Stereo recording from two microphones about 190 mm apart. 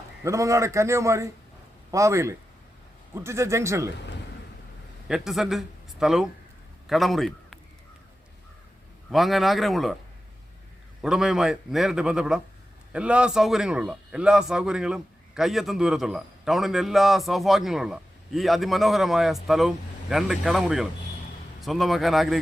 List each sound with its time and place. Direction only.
0.3 s a man's voice: 15° right (ahead or behind)
5.0 s a man's voice: centre (ahead or behind)
9.0 s a man's voice: centre (ahead or behind)
11.0 s a man's voice: 5° right (ahead or behind)